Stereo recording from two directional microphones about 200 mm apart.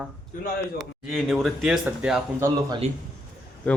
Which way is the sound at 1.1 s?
Centre (ahead or behind).